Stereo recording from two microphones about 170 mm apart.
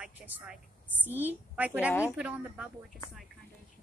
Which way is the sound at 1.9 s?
15° left (ahead or behind).